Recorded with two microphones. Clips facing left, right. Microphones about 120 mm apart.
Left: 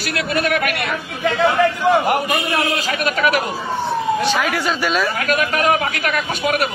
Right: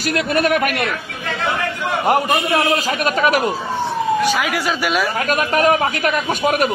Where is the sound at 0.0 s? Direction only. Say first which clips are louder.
Right 3 dB; 40° right (ahead or behind).